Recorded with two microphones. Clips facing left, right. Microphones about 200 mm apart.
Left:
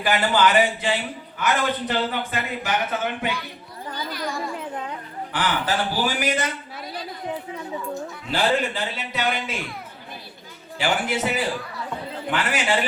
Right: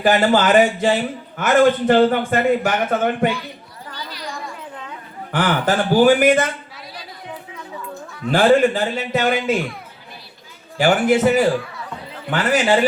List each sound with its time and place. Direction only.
0.0 s a man's voice: 45° right (ahead or behind)
5.3 s a man's voice: 45° right (ahead or behind)
8.3 s a man's voice: 50° right (ahead or behind)
10.8 s a man's voice: 45° right (ahead or behind)